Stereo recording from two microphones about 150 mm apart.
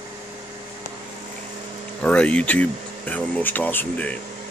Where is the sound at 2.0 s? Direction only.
10° left (ahead or behind).